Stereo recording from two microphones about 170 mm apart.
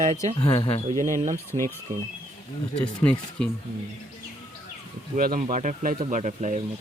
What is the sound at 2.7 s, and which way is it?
Speech, 5° left (ahead or behind).